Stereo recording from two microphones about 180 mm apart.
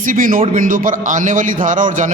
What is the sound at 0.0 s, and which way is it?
A man's voice, 50° right (ahead or behind).